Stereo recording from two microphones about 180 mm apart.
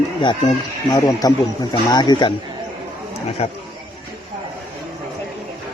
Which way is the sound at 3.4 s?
35° left (ahead or behind).